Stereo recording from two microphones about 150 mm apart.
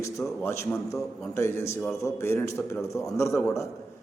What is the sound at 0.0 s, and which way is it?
A man's voice, 20° left (ahead or behind).